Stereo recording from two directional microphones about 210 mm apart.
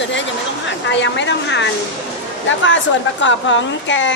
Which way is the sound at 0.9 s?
60° left (ahead or behind).